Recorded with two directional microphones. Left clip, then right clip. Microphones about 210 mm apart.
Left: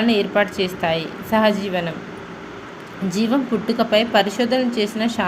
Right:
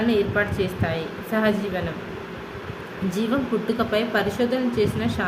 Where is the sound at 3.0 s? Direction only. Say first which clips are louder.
Left 4 dB; 20° left (ahead or behind).